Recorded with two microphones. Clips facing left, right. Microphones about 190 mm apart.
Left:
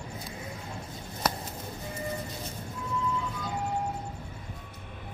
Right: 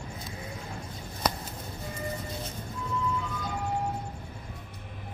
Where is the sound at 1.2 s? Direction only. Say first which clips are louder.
Right 1 dB; 5° left (ahead or behind).